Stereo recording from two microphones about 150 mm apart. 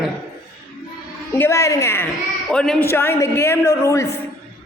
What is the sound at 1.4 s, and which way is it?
Speech, 20° left (ahead or behind).